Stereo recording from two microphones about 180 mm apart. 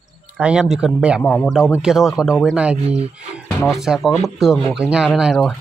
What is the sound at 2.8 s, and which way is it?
Speech, 35° right (ahead or behind).